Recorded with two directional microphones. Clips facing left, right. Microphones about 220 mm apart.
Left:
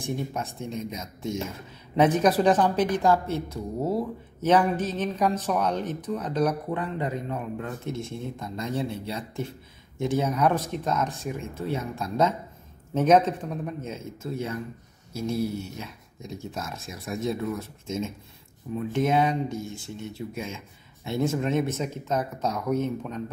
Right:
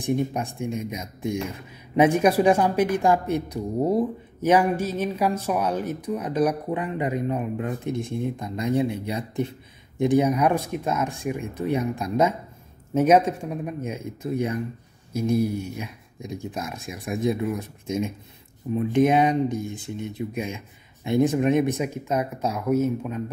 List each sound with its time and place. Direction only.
0.0 s a woman's voice: 15° right (ahead or behind)